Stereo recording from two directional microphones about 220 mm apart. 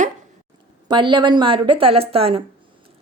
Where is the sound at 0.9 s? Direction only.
20° right (ahead or behind).